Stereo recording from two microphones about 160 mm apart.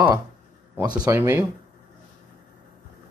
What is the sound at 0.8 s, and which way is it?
Speech, 20° right (ahead or behind).